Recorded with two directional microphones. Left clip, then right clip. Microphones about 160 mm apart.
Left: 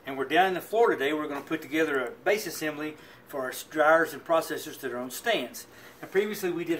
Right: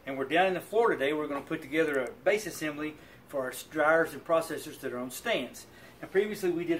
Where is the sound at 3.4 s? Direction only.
15° right (ahead or behind).